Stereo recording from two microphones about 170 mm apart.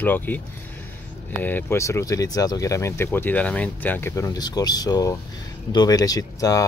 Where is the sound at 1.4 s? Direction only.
15° left (ahead or behind).